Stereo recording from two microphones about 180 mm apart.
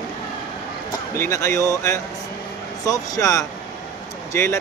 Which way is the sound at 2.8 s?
20° left (ahead or behind).